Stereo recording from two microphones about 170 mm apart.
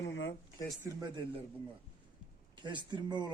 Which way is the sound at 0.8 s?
25° right (ahead or behind).